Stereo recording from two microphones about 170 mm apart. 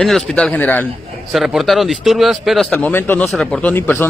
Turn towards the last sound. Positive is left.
turn(degrees=10)  # may be behind; listen again after turning